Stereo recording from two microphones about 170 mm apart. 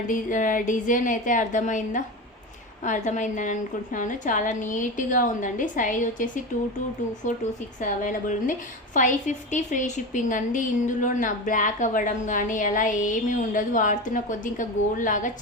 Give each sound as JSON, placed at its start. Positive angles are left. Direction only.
{"t": 0.1, "sound": "a woman's voice", "side_deg": 50}
{"t": 7.8, "sound": "a woman's voice", "side_deg": 50}